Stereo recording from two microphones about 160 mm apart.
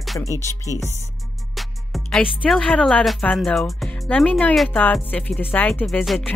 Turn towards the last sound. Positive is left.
turn(degrees=5)  # may be behind; listen again after turning